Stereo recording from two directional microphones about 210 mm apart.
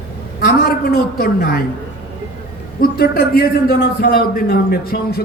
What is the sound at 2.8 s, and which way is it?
A man's voice, 45° left (ahead or behind).